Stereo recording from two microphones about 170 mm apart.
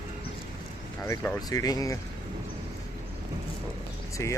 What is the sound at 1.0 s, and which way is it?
Speech, 15° left (ahead or behind).